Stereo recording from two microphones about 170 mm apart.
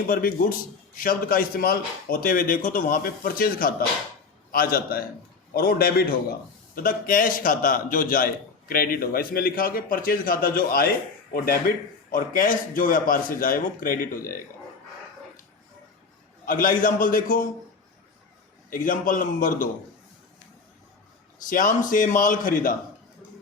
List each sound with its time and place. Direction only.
0.1 s a man's voice: 60° left (ahead or behind)
16.5 s a man's voice: 55° left (ahead or behind)
18.7 s a man's voice: 50° left (ahead or behind)
21.4 s a man's voice: 50° left (ahead or behind)